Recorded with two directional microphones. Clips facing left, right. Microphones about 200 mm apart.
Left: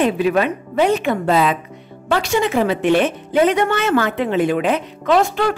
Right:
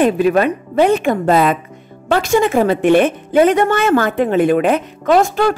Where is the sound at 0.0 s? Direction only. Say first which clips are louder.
Right 4 dB; 45° right (ahead or behind).